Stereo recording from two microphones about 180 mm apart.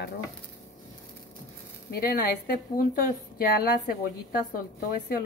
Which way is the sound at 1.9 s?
55° left (ahead or behind).